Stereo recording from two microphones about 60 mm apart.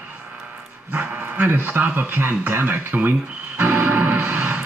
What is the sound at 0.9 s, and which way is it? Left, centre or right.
Speech, right.